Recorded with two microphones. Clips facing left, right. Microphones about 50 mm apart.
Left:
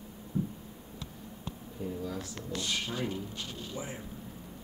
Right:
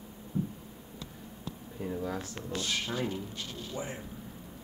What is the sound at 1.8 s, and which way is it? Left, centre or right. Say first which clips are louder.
Speech: right 2 dB; right.